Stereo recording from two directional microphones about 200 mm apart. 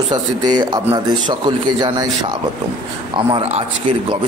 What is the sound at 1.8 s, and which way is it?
A man's voice, 20° right (ahead or behind).